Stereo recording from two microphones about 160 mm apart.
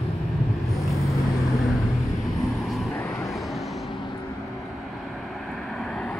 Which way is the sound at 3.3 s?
Centre (ahead or behind).